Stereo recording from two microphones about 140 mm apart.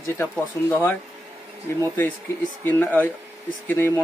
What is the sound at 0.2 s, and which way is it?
Speech, 15° left (ahead or behind).